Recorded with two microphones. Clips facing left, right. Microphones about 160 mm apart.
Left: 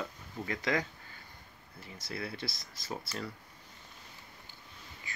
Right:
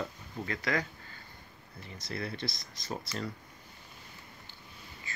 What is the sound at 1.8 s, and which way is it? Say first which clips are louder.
Speech: right 2 dB; 5° left (ahead or behind).